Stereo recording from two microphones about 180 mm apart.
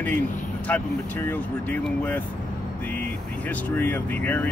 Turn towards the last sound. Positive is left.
turn(degrees=10)  # may be behind; listen again after turning